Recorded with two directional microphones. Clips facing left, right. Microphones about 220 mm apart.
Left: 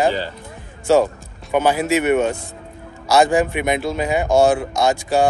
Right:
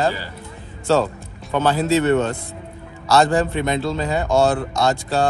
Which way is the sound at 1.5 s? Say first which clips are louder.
Left 1 dB; 15° left (ahead or behind).